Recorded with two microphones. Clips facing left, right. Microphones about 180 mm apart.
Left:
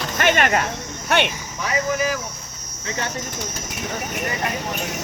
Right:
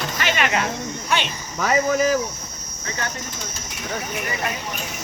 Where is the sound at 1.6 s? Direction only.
45° right (ahead or behind).